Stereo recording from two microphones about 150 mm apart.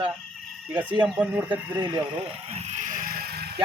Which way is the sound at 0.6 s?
10° right (ahead or behind).